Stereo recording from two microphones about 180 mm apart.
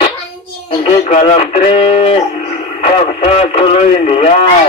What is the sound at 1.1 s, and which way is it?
Speech, 40° left (ahead or behind).